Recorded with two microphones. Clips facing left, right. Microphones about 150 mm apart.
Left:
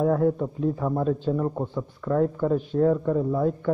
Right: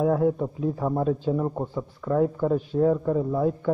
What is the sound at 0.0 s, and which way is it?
A man's voice, 5° right (ahead or behind).